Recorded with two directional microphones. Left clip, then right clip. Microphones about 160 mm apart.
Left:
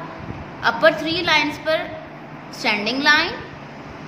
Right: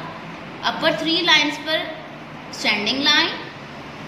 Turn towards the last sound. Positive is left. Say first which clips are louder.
# left 1 dB
turn(degrees=45)  # may be behind; listen again after turning